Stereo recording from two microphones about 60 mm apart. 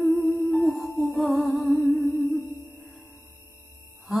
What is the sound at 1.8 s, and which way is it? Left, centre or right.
Music, right.